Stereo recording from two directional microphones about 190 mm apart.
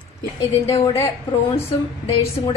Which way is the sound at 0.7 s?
30° left (ahead or behind).